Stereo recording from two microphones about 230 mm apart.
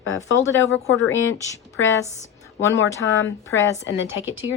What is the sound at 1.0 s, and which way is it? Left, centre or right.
Speech, left.